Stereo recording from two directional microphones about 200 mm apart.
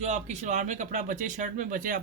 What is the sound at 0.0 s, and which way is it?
Speech, 35° right (ahead or behind).